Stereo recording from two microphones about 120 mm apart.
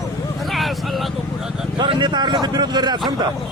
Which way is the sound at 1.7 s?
40° right (ahead or behind).